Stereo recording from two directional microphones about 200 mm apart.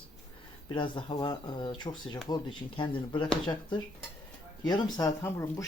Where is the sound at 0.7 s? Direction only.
25° left (ahead or behind).